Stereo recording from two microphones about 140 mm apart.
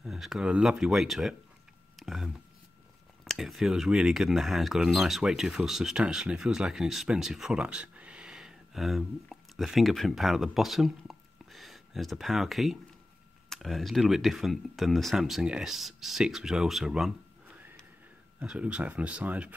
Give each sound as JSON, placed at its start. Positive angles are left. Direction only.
{"t": 0.0, "sound": "speech", "side_deg": 0}
{"t": 18.4, "sound": "speech", "side_deg": -5}